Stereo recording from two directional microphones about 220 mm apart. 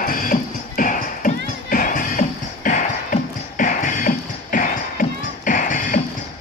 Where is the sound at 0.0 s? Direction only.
40° left (ahead or behind).